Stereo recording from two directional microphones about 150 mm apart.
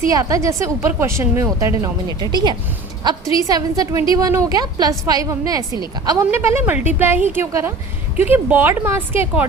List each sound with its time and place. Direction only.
0.1 s a woman's voice: 20° right (ahead or behind)